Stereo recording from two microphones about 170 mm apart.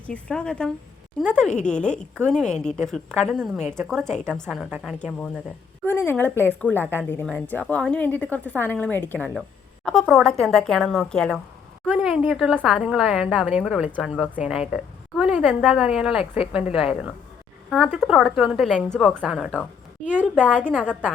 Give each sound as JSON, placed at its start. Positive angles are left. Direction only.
{"t": 0.0, "sound": "a woman's voice", "side_deg": 5}
{"t": 5.8, "sound": "a woman's voice", "side_deg": 15}
{"t": 20.0, "sound": "a woman's voice", "side_deg": 45}
{"t": 20.7, "sound": "a woman's voice", "side_deg": 5}